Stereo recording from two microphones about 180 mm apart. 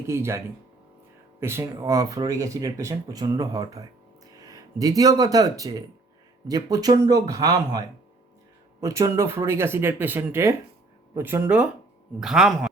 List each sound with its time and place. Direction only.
0.1 s speech: 15° right (ahead or behind)